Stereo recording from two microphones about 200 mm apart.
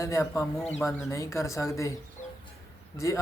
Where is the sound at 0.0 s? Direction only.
15° left (ahead or behind).